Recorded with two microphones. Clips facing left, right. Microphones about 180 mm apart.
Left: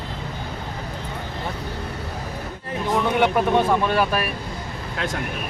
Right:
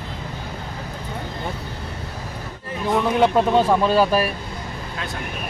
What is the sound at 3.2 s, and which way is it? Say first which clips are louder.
Speech: right 3 dB; 30° right (ahead or behind).